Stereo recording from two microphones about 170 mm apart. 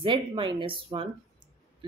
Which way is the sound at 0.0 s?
30° right (ahead or behind).